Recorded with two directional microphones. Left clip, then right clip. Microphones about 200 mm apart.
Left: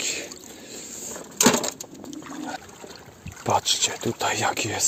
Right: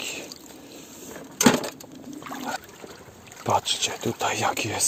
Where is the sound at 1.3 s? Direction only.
45° left (ahead or behind).